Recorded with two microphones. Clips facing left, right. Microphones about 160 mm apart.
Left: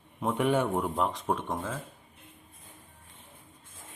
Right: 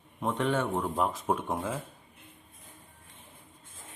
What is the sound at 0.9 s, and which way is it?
Speech, 5° right (ahead or behind).